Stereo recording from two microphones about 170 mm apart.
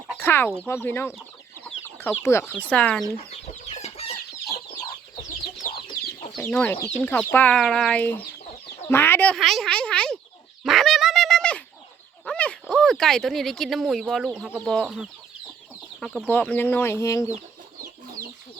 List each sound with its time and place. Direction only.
0.2 s speech: 10° left (ahead or behind)
1.6 s chicken: 10° left (ahead or behind)
2.6 s speech: 5° left (ahead or behind)
3.2 s chicken: 40° left (ahead or behind)
5.9 s chicken: 40° left (ahead or behind)
6.4 s speech: 10° left (ahead or behind)
10.6 s fowl: centre (ahead or behind)
12.2 s speech: 5° left (ahead or behind)
17.3 s chicken: 50° right (ahead or behind)